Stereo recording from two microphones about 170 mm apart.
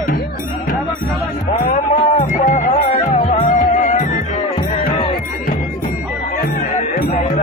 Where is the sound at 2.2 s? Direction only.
50° left (ahead or behind).